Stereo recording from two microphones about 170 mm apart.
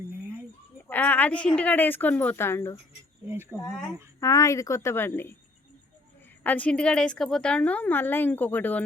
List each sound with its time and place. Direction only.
0.9 s a woman's voice: 10° left (ahead or behind)
3.2 s speech: 15° right (ahead or behind)
3.7 s speech: centre (ahead or behind)
4.2 s a woman's voice: 20° left (ahead or behind)
6.4 s a woman's voice: 10° left (ahead or behind)